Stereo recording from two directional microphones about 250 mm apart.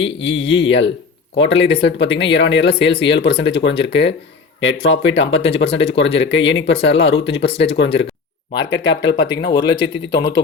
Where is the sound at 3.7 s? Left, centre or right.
Left.